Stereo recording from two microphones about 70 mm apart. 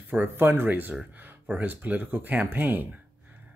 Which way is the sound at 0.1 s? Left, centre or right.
Right.